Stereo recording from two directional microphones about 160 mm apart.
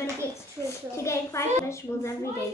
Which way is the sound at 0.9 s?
20° left (ahead or behind).